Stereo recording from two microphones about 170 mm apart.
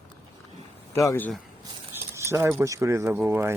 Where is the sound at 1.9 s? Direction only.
15° right (ahead or behind).